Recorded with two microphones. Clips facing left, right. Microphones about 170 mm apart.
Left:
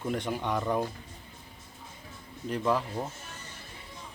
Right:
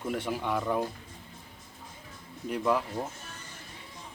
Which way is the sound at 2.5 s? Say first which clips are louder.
Even; 10° right (ahead or behind).